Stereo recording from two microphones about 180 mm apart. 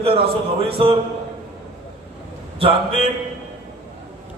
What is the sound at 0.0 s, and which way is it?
Speech, 30° right (ahead or behind).